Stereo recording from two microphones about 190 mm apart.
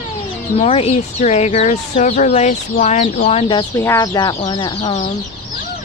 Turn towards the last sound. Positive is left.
turn(degrees=35)  # may be behind; listen again after turning